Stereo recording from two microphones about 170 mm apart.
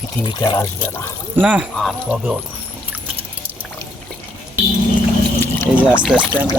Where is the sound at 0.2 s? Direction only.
25° left (ahead or behind).